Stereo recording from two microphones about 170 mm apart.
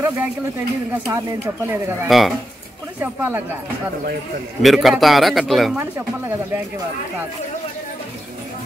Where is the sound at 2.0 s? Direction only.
Centre (ahead or behind).